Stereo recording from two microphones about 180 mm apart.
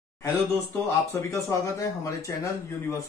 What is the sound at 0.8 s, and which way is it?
Speech, 15° left (ahead or behind).